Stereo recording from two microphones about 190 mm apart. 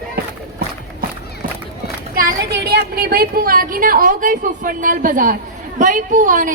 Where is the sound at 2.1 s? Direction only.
60° right (ahead or behind).